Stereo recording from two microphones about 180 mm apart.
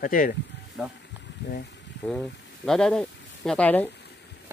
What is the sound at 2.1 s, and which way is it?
Speech, 5° left (ahead or behind).